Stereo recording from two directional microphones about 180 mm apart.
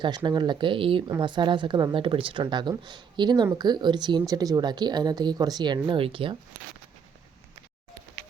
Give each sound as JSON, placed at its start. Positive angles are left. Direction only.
{"t": 0.3, "sound": "speech", "side_deg": -25}